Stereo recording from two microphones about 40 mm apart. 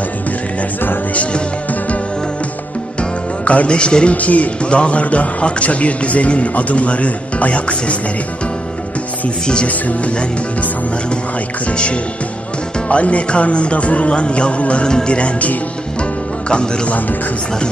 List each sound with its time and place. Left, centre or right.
1.1 s music: left
3.0 s speech: left
9.7 s speech: left
11.7 s speech: left
16.0 s music: left